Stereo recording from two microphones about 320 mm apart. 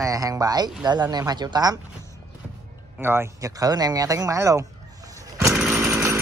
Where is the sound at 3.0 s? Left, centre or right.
Centre.